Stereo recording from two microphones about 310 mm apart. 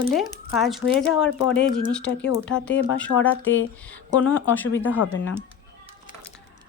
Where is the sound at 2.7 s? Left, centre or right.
Left.